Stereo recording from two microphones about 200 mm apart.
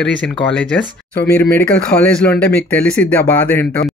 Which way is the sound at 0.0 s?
5° left (ahead or behind).